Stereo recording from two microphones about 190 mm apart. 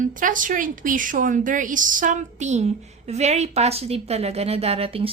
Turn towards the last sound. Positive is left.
turn(degrees=-30)  # may be behind; listen again after turning